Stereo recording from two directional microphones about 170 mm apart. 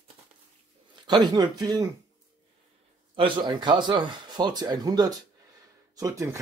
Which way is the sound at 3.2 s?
30° right (ahead or behind).